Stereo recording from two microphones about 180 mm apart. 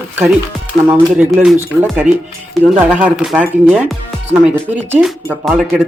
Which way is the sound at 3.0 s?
5° right (ahead or behind).